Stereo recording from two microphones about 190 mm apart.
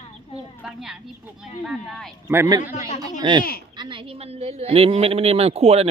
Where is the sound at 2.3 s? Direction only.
15° right (ahead or behind).